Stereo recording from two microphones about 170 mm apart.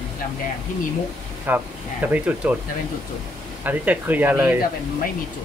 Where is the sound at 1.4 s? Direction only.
10° right (ahead or behind).